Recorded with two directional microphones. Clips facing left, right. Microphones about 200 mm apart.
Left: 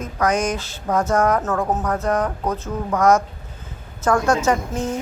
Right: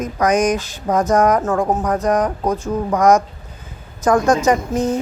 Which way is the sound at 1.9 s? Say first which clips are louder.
Right 4 dB; 15° right (ahead or behind).